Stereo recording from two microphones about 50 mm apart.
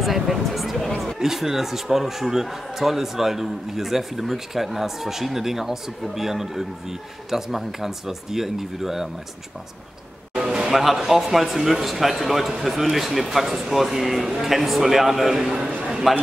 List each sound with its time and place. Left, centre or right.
0.0 s a man's voice: centre
1.2 s a man's voice: centre
10.3 s music: centre
10.7 s a man's voice: centre
15.9 s clip-clop: centre